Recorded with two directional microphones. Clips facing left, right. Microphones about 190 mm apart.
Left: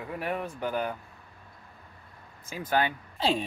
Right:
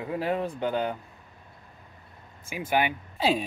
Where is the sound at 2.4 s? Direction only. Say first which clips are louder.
Right 1 dB; 10° right (ahead or behind).